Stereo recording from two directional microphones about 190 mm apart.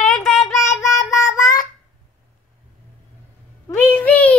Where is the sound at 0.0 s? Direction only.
5° left (ahead or behind).